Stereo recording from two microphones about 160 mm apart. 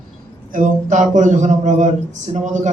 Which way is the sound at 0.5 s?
55° right (ahead or behind).